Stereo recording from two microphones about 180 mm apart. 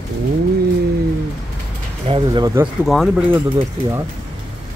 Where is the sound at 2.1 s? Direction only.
25° right (ahead or behind).